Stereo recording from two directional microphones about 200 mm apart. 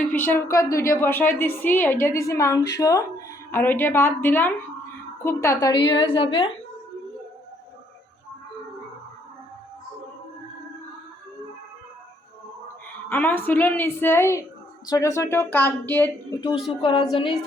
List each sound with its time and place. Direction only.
0.0 s a woman's voice: 10° left (ahead or behind); by 6.5 s 25° left (ahead or behind)
13.1 s a woman's voice: 10° left (ahead or behind)
16.8 s a woman's voice: 25° left (ahead or behind)